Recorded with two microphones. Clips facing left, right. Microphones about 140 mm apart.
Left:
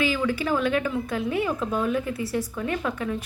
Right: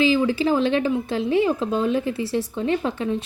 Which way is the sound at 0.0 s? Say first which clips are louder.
Right 6 dB; 25° right (ahead or behind).